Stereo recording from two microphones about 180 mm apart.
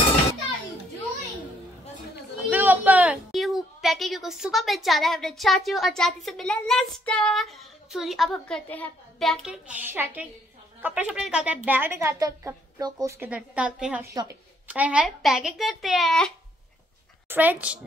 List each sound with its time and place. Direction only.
2.5 s a woman's voice: 10° right (ahead or behind)
14.0 s speech: 20° right (ahead or behind)
14.7 s speech: 5° right (ahead or behind)
17.3 s a woman's voice: 10° right (ahead or behind)